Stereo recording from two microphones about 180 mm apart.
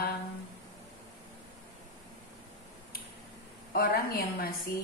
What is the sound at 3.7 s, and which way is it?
Speech, 55° left (ahead or behind).